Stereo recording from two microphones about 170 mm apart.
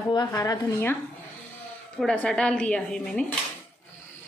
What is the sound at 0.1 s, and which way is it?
Speech, 25° left (ahead or behind).